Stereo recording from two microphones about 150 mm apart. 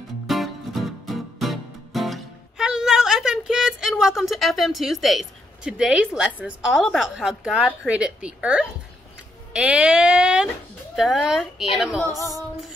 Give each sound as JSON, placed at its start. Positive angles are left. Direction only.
{"t": 0.3, "sound": "music", "side_deg": 0}
{"t": 4.0, "sound": "speech", "side_deg": 0}
{"t": 12.0, "sound": "female singing", "side_deg": 20}